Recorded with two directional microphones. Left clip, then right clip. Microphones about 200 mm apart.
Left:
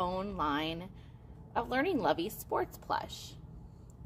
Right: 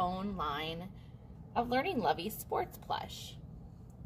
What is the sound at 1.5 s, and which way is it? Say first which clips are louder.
A woman's voice: left 1 dB; 40° left (ahead or behind).